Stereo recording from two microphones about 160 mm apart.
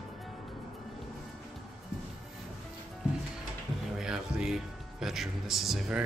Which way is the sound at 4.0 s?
5° right (ahead or behind).